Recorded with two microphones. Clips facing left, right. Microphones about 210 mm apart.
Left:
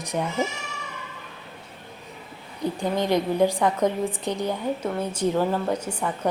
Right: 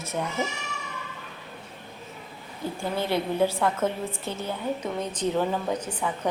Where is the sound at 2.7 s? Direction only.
15° left (ahead or behind).